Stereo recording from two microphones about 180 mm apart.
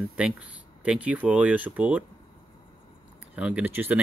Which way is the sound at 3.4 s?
5° right (ahead or behind).